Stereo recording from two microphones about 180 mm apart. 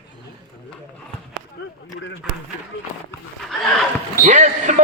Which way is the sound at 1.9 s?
90° left.